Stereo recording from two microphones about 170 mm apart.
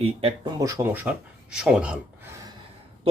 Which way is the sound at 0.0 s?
35° right (ahead or behind).